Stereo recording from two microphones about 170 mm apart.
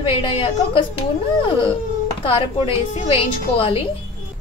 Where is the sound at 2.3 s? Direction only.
35° left (ahead or behind).